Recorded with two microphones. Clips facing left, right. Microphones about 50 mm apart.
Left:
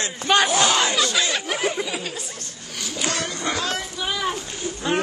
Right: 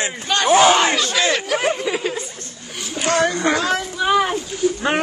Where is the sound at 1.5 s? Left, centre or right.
Right.